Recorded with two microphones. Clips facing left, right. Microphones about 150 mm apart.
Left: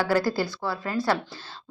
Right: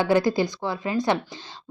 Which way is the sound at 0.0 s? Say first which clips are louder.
Right 3 dB; 20° right (ahead or behind).